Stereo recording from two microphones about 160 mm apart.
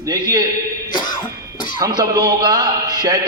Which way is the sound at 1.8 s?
25° right (ahead or behind).